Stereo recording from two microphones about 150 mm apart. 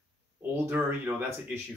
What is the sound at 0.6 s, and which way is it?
Speech, 15° right (ahead or behind).